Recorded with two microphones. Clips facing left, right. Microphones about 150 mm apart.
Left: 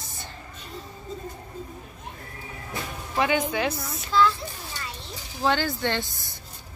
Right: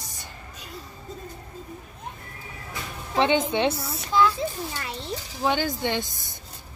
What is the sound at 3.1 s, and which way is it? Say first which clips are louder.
Speech: right 2 dB; 25° right (ahead or behind).